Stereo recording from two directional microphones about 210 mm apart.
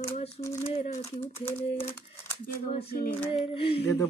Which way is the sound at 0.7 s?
30° left (ahead or behind).